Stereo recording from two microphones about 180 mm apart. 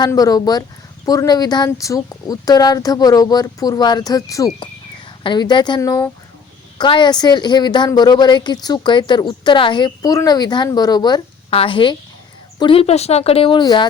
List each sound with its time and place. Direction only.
0.0 s a woman's voice: 20° left (ahead or behind)